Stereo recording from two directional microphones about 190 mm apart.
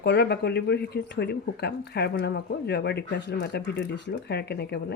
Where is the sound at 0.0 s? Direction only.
60° left (ahead or behind).